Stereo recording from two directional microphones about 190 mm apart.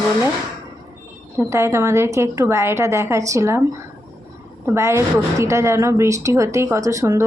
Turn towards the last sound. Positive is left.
turn(degrees=-15)  # may be behind; listen again after turning